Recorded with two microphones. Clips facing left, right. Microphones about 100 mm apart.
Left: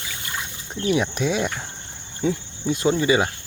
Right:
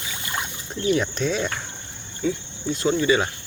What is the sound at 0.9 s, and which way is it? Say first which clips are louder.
Speech: left 1 dB; 10° left (ahead or behind).